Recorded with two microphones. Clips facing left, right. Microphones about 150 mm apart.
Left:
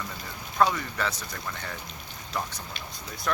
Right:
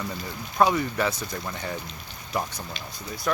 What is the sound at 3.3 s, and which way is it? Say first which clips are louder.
Speech: right 3 dB; 5° right (ahead or behind).